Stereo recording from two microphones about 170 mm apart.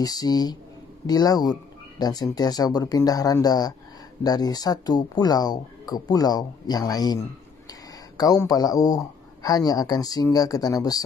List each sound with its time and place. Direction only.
0.0 s speech: 25° left (ahead or behind)